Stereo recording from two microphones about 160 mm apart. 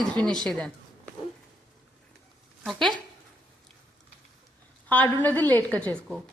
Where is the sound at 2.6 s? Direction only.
Centre (ahead or behind).